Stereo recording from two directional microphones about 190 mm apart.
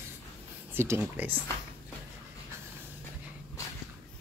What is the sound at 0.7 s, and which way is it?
Speech, 10° right (ahead or behind).